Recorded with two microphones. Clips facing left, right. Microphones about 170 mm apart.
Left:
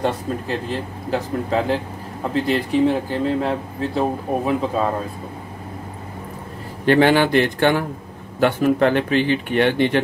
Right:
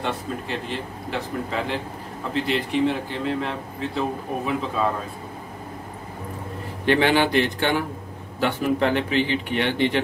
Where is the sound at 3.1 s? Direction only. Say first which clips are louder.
Left 6 dB; 40° left (ahead or behind).